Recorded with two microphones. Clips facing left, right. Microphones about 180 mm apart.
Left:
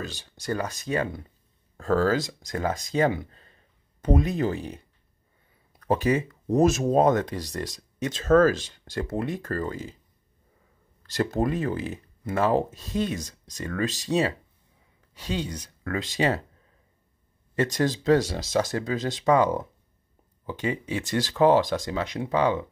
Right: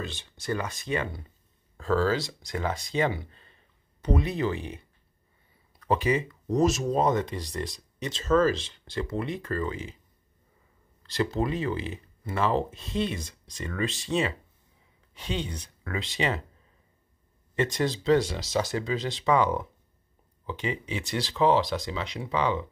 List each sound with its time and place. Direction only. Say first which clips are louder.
0.0 s speech: left 1 dB; 40° left (ahead or behind)
11.0 s speech: left 2 dB; 45° left (ahead or behind)
17.6 s speech: left 2 dB; 45° left (ahead or behind)